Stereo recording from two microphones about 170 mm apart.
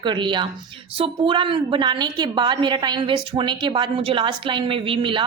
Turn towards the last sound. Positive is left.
turn(degrees=-30)  # may be behind; listen again after turning